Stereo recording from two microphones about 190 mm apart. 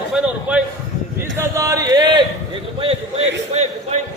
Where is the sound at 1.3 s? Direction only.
15° right (ahead or behind).